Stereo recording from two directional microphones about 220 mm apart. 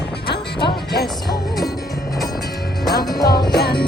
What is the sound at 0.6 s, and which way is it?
Music, 45° left (ahead or behind).